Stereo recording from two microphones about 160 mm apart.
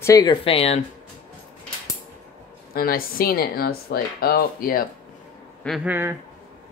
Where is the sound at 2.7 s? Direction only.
65° left (ahead or behind).